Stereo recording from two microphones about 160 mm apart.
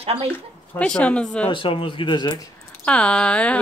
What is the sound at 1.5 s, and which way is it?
Speech, 35° left (ahead or behind).